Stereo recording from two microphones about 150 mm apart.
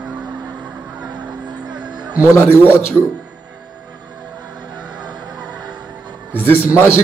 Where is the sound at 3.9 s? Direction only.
30° right (ahead or behind).